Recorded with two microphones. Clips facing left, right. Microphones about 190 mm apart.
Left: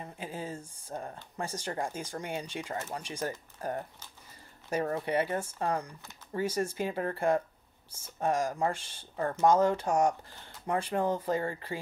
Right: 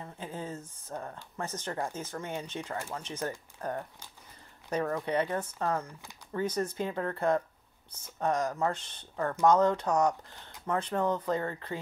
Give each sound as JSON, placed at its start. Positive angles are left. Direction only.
{"t": 0.0, "sound": "a sound", "side_deg": 10}
{"t": 1.4, "sound": "speech", "side_deg": 10}
{"t": 5.0, "sound": "speech", "side_deg": 10}
{"t": 9.1, "sound": "speech", "side_deg": 25}
{"t": 9.5, "sound": "speech", "side_deg": 10}